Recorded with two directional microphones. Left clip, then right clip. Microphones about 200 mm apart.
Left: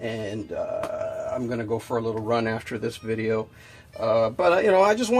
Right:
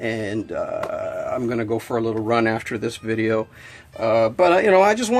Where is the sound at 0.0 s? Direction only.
35° right (ahead or behind).